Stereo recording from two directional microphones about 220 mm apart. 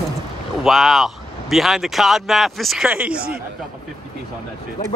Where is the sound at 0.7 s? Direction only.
Centre (ahead or behind).